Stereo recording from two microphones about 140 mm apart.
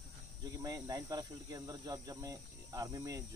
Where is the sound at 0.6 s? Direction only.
25° right (ahead or behind).